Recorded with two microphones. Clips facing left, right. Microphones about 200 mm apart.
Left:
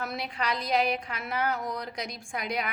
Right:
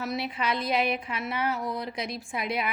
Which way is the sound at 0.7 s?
40° left (ahead or behind).